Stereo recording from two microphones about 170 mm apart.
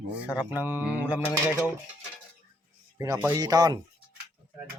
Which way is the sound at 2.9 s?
20° right (ahead or behind).